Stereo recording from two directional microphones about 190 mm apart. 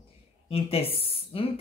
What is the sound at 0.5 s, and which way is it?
Speech, 30° left (ahead or behind).